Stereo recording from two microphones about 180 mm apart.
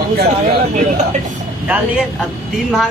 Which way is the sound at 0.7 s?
40° right (ahead or behind).